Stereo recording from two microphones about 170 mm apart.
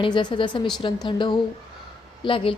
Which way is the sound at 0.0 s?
25° left (ahead or behind).